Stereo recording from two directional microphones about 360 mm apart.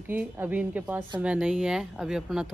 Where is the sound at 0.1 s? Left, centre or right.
Centre.